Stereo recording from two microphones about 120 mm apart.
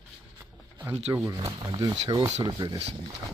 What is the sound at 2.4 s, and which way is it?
Speech, 35° right (ahead or behind).